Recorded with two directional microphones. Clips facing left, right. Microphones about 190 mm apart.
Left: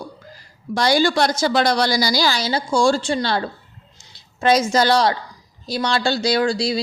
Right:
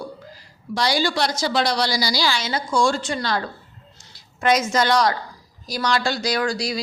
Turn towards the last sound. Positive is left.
turn(degrees=30)  # may be behind; listen again after turning